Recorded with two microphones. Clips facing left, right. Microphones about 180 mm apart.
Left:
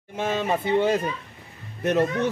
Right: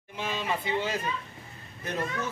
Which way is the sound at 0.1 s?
50° left (ahead or behind).